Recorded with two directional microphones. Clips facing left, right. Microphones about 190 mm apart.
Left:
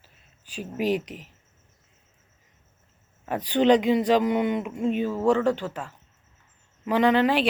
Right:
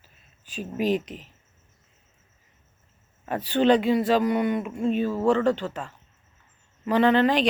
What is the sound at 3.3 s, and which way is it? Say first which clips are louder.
Speech: left 1 dB; 15° left (ahead or behind).